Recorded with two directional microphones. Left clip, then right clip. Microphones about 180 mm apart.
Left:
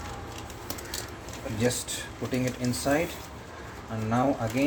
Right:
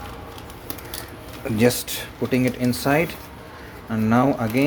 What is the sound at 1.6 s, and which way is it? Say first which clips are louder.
Speech: right 9 dB; 60° right (ahead or behind).